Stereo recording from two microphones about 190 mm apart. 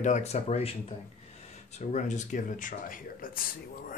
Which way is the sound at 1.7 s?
35° left (ahead or behind).